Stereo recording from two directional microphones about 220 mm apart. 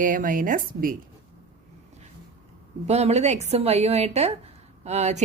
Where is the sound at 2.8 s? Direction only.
30° right (ahead or behind).